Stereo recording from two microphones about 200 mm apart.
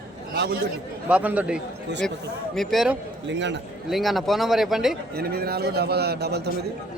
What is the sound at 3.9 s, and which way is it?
Speech, centre (ahead or behind).